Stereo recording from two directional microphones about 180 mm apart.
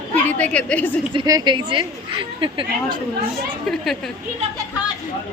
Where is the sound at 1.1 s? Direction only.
20° right (ahead or behind).